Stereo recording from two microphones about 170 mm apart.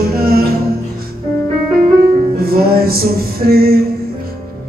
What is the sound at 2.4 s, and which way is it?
Music, 60° right (ahead or behind).